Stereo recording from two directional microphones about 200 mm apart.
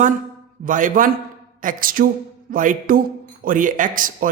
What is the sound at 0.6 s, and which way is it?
A man's voice, 40° right (ahead or behind).